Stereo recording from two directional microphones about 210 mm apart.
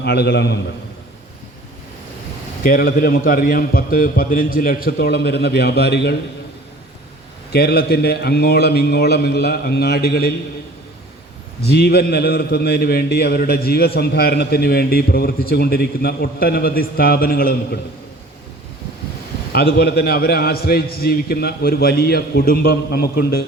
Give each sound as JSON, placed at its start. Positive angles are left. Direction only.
{"t": 0.0, "sound": "a man's voice", "side_deg": 50}
{"t": 2.6, "sound": "a man's voice", "side_deg": 45}
{"t": 7.5, "sound": "a man's voice", "side_deg": 50}
{"t": 11.6, "sound": "a man's voice", "side_deg": 50}
{"t": 19.5, "sound": "a man's voice", "side_deg": 45}